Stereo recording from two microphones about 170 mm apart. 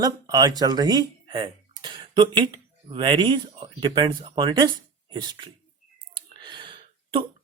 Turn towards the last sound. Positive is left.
turn(degrees=-30)  # may be behind; listen again after turning